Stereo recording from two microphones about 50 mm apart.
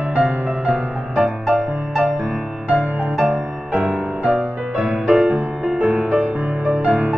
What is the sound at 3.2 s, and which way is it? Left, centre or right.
Music, centre.